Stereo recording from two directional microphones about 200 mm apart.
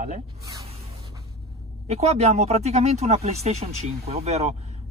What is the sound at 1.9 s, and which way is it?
Speech, 30° right (ahead or behind).